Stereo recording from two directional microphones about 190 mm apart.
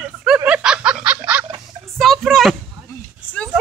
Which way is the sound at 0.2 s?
5° right (ahead or behind).